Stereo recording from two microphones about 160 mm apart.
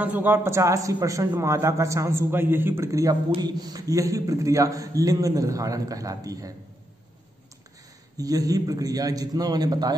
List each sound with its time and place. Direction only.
0.0 s a man's voice: 10° right (ahead or behind)
8.2 s a man's voice: 20° right (ahead or behind)